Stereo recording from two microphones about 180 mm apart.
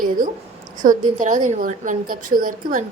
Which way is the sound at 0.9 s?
45° right (ahead or behind).